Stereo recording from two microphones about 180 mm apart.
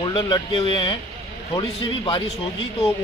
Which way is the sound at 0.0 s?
25° left (ahead or behind).